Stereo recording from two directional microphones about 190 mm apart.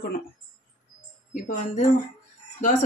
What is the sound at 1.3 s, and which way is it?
Speech, 45° left (ahead or behind).